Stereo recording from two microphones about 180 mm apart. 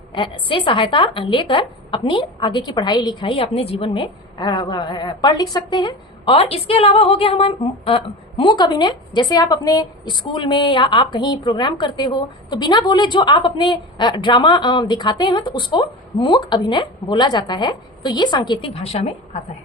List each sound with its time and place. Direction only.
0.1 s a woman's voice: 25° left (ahead or behind)